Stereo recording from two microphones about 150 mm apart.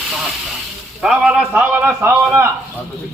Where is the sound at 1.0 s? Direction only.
5° right (ahead or behind).